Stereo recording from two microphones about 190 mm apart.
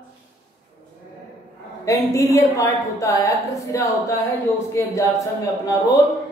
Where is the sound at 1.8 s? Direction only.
15° left (ahead or behind).